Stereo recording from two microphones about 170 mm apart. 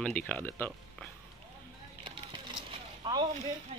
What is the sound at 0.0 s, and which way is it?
Speech, 10° left (ahead or behind).